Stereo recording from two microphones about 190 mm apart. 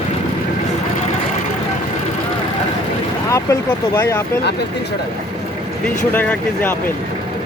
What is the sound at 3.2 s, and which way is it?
Speech, 15° left (ahead or behind).